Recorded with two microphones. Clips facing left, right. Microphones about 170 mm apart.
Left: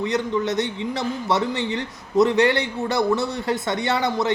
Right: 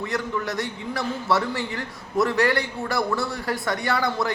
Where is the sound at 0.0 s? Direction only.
20° left (ahead or behind).